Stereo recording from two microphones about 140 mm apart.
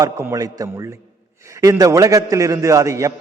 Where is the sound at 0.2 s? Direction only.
20° right (ahead or behind).